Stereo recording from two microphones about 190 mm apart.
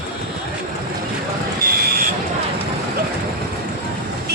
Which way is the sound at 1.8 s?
50° right (ahead or behind).